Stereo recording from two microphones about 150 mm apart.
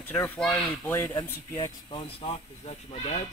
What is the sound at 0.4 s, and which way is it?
Speech, 10° left (ahead or behind).